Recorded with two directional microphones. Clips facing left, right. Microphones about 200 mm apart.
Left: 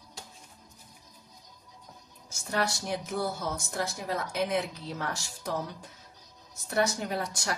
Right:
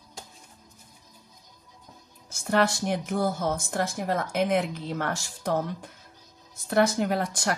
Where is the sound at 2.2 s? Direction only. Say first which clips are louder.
Right 7 dB; 60° right (ahead or behind).